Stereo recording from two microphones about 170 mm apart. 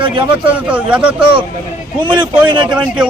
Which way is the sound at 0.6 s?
5° right (ahead or behind).